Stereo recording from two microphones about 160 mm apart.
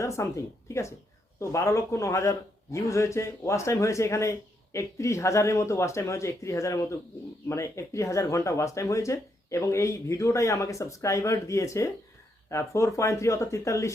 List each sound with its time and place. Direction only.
0.0 s speech: 20° left (ahead or behind)